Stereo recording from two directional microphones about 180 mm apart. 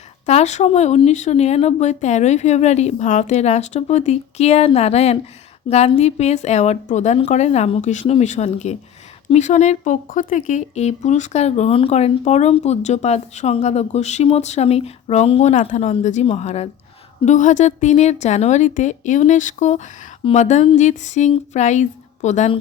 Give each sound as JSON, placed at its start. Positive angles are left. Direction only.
{"t": 0.3, "sound": "speech", "side_deg": 40}